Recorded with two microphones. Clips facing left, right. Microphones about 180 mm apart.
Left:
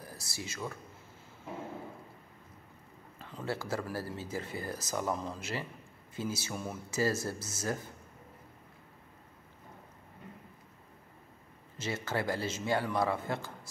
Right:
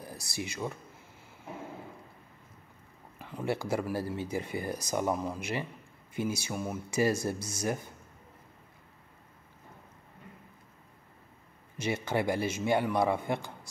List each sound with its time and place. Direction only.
0.0 s a sound: 20° right (ahead or behind)
3.2 s speech: 15° right (ahead or behind)
11.8 s speech: 15° right (ahead or behind)